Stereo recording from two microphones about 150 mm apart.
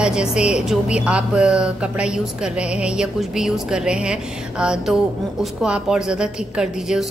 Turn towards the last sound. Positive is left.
turn(degrees=-5)  # may be behind; listen again after turning